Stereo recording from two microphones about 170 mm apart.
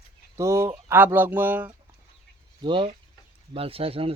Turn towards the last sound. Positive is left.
turn(degrees=-35)  # may be behind; listen again after turning